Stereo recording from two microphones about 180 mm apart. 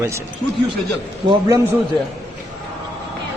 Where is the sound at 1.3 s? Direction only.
20° right (ahead or behind).